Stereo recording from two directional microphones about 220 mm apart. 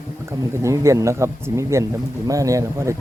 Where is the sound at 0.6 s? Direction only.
15° right (ahead or behind).